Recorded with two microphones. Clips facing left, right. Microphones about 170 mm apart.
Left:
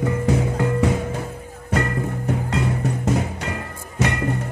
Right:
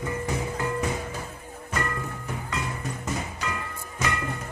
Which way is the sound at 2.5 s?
70° left (ahead or behind).